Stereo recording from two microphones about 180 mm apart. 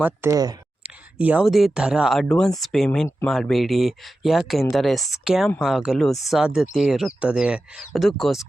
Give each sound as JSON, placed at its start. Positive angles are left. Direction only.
{"t": 0.0, "sound": "speech", "side_deg": -15}
{"t": 0.8, "sound": "speech", "side_deg": -10}